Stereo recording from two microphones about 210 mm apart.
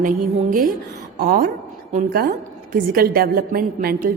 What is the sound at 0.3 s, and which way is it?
A woman's voice, 40° right (ahead or behind).